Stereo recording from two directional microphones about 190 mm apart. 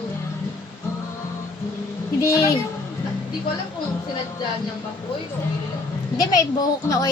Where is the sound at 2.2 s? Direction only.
15° left (ahead or behind).